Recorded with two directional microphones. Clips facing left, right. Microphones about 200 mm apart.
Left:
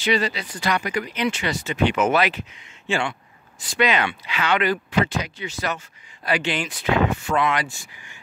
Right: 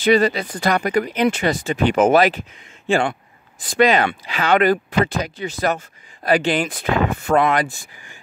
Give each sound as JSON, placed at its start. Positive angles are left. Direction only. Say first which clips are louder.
{"t": 0.0, "sound": "speech", "louder": "right 7 dB", "side_deg": -50}